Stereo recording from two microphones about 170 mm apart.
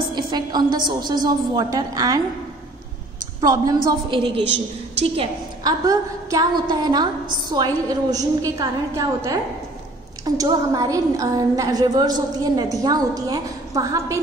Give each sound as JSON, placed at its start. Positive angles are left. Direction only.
{"t": 0.1, "sound": "a woman's voice", "side_deg": -25}
{"t": 3.3, "sound": "a woman's voice", "side_deg": -25}
{"t": 4.9, "sound": "a woman's voice", "side_deg": -35}
{"t": 5.6, "sound": "a woman's voice", "side_deg": -20}